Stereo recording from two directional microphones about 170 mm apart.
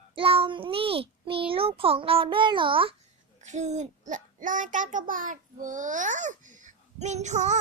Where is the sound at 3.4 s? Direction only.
45° right (ahead or behind).